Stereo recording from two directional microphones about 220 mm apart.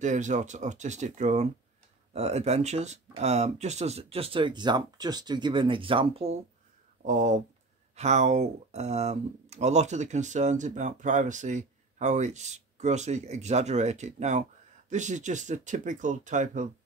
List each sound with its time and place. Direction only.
0.0 s speech: 35° right (ahead or behind)